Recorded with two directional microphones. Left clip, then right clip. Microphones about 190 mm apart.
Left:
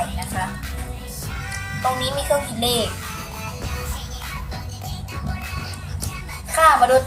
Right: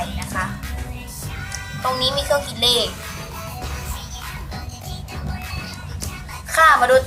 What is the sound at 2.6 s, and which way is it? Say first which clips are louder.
Speech: right 4 dB; 15° right (ahead or behind).